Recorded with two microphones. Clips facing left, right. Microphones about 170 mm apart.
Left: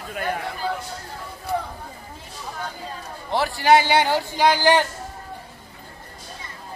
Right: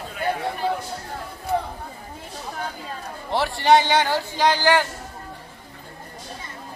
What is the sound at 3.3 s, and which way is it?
A man's voice, centre (ahead or behind).